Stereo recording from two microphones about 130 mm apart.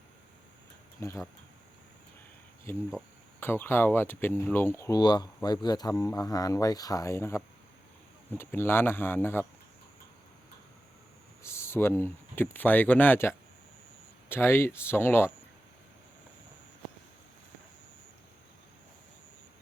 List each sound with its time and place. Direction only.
0.9 s speech: 20° left (ahead or behind)
2.7 s speech: 20° left (ahead or behind)
11.4 s speech: 20° left (ahead or behind)